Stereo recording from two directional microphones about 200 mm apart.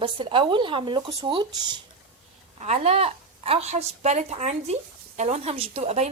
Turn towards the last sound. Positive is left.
turn(degrees=-35)  # may be behind; listen again after turning